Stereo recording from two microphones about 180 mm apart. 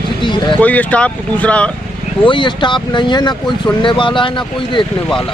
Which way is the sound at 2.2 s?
25° left (ahead or behind).